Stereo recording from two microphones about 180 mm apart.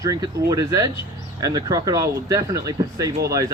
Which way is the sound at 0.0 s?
20° right (ahead or behind).